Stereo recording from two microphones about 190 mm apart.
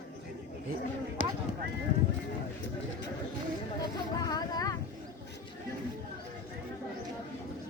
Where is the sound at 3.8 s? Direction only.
20° left (ahead or behind).